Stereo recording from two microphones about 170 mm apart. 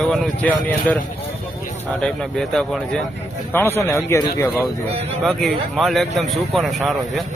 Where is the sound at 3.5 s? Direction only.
15° left (ahead or behind).